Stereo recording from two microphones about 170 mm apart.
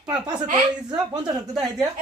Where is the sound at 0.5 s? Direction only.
25° right (ahead or behind).